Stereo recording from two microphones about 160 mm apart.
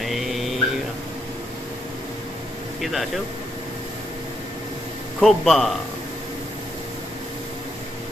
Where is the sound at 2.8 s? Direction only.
Centre (ahead or behind).